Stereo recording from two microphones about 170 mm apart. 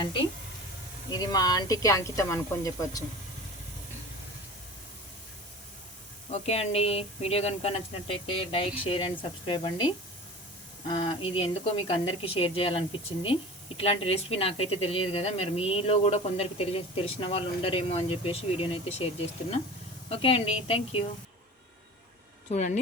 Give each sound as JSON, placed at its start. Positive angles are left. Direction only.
{"t": 1.1, "sound": "speech", "side_deg": 25}
{"t": 6.3, "sound": "speech", "side_deg": 40}
{"t": 20.1, "sound": "speech", "side_deg": 35}
{"t": 22.4, "sound": "speech", "side_deg": 45}